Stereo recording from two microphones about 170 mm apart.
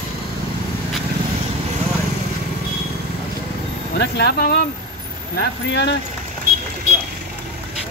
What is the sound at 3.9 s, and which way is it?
Speech, 70° left (ahead or behind).